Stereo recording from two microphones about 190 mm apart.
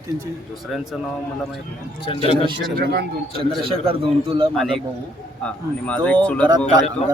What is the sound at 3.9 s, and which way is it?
Speech, 30° right (ahead or behind).